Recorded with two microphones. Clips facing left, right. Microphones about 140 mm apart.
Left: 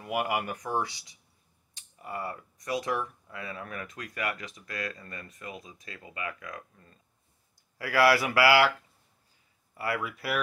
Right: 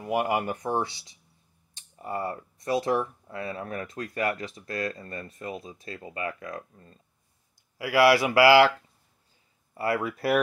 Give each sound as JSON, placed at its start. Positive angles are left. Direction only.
{"t": 0.0, "sound": "speech", "side_deg": -30}
{"t": 7.7, "sound": "speech", "side_deg": -15}
{"t": 9.8, "sound": "speech", "side_deg": -30}